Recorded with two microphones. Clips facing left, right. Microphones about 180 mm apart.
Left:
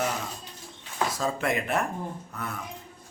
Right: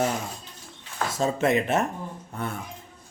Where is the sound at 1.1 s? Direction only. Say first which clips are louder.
Right 8 dB; 25° right (ahead or behind).